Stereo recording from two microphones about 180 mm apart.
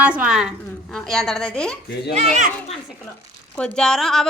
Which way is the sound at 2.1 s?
40° right (ahead or behind).